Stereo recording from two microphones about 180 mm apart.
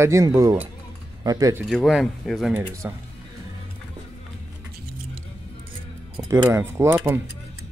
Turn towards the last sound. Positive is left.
turn(degrees=-15)  # may be behind; listen again after turning